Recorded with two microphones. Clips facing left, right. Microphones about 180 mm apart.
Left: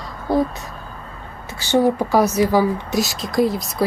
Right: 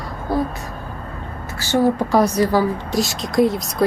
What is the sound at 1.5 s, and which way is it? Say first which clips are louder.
Speech: left 1 dB; 20° left (ahead or behind).